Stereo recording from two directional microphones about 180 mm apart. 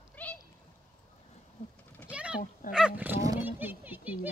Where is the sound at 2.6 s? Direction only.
50° left (ahead or behind).